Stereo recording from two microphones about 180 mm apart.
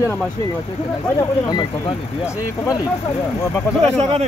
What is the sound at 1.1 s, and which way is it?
Speech, 20° left (ahead or behind).